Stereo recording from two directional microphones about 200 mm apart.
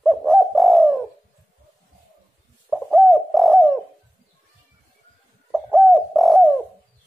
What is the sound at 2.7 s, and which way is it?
Bird, centre (ahead or behind).